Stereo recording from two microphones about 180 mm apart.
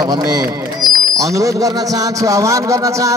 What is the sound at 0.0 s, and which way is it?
A man's voice, 20° right (ahead or behind).